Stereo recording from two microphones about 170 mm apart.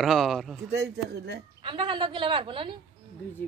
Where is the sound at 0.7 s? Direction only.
75° right (ahead or behind).